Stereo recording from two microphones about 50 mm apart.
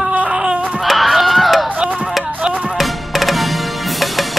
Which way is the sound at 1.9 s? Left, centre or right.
Centre.